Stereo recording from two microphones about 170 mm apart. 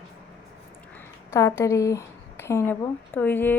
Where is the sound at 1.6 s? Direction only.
20° left (ahead or behind).